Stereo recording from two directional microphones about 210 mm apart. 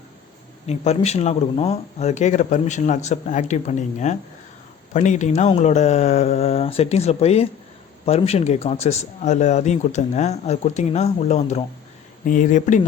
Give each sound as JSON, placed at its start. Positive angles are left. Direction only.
{"t": 0.7, "sound": "a man's voice", "side_deg": 30}